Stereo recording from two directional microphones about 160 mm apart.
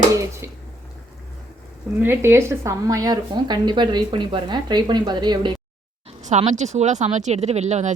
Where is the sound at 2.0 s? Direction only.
15° right (ahead or behind).